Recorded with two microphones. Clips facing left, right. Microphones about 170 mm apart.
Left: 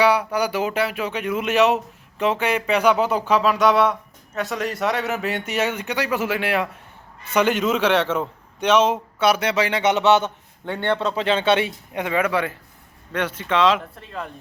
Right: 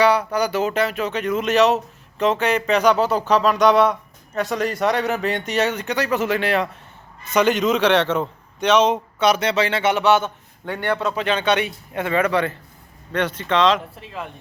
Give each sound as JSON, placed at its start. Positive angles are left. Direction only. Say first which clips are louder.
{"t": 0.0, "sound": "speech", "louder": "right 1 dB", "side_deg": 10}
{"t": 11.9, "sound": "speech", "louder": "right 2 dB", "side_deg": 15}